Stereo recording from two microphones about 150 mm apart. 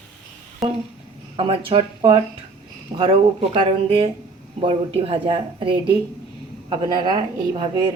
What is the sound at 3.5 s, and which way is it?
A woman's voice, 40° right (ahead or behind).